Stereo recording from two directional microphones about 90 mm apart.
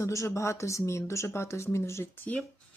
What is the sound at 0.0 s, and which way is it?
Speech, 35° left (ahead or behind).